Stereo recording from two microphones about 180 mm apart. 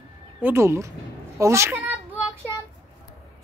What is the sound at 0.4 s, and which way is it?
Speech, 15° right (ahead or behind).